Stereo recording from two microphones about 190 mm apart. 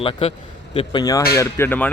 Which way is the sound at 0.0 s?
30° left (ahead or behind).